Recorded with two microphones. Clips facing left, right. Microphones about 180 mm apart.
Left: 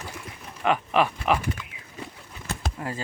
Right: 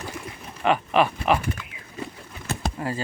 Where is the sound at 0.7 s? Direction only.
25° right (ahead or behind).